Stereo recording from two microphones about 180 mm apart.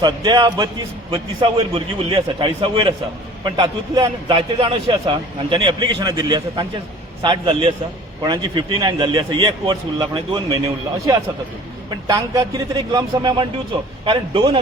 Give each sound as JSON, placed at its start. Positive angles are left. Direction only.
{"t": 0.0, "sound": "a man's voice", "side_deg": -25}
{"t": 12.0, "sound": "a man's voice", "side_deg": -20}